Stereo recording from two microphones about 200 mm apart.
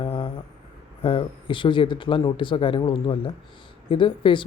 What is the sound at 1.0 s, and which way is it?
Speech, 25° left (ahead or behind).